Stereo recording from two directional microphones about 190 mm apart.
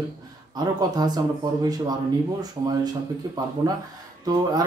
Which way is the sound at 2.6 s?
20° right (ahead or behind).